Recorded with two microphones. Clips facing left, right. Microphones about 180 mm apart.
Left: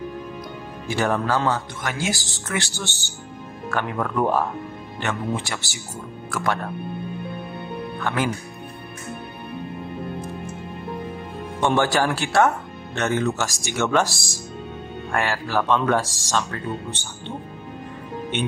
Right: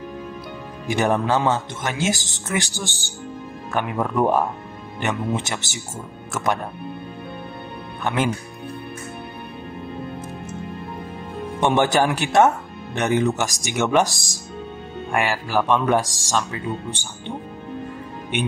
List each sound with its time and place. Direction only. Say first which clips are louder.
0.8 s speech: right 2 dB; 20° right (ahead or behind)
8.0 s speech: right 2 dB; 25° right (ahead or behind)
11.6 s speech: right 2 dB; 20° right (ahead or behind)